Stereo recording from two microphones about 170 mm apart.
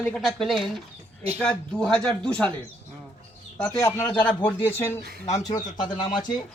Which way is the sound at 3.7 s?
15° left (ahead or behind).